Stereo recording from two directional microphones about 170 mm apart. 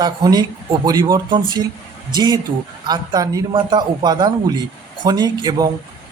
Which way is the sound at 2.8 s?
25° right (ahead or behind).